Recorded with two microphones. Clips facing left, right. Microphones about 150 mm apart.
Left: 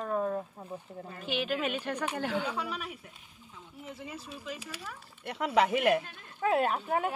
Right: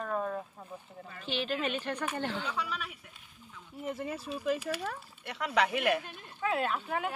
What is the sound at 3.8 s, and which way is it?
Speech, 50° right (ahead or behind).